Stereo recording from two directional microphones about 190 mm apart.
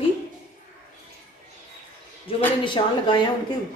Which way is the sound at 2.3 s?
25° left (ahead or behind).